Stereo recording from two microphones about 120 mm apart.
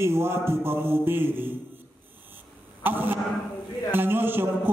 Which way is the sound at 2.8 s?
15° right (ahead or behind).